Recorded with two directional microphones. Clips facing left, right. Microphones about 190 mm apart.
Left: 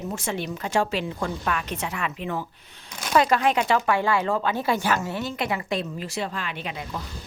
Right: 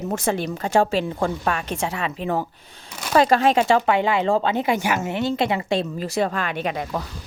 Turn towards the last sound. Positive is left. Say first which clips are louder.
# right 7 dB
turn(degrees=-55)  # may be behind; listen again after turning